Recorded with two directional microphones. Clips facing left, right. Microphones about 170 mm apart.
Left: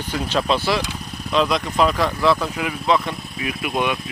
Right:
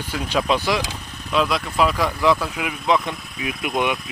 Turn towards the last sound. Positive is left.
turn(degrees=-15)  # may be behind; listen again after turning